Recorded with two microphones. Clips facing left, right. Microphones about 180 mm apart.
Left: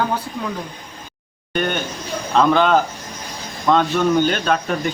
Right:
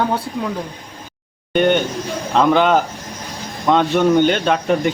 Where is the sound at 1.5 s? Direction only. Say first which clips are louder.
Right 7 dB; 20° right (ahead or behind).